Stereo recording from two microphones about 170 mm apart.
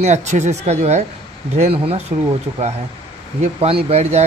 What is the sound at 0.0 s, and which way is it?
Speech, 45° right (ahead or behind).